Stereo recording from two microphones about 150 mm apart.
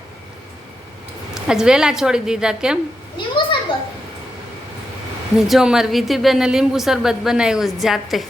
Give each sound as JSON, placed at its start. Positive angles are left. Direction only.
{"t": 1.3, "sound": "a woman's voice", "side_deg": -5}
{"t": 3.2, "sound": "a sound", "side_deg": 30}
{"t": 5.4, "sound": "a woman's voice", "side_deg": -5}